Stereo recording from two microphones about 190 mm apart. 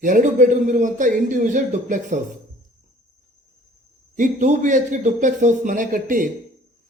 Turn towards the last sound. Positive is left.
turn(degrees=-45)  # may be behind; listen again after turning